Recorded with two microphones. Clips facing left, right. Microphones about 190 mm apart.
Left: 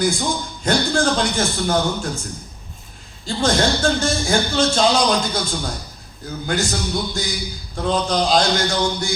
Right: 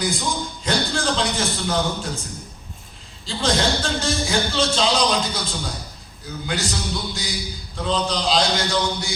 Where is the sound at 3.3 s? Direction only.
50° left (ahead or behind).